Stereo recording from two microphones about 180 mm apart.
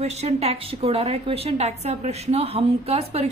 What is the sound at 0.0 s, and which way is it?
A woman's voice, 35° right (ahead or behind).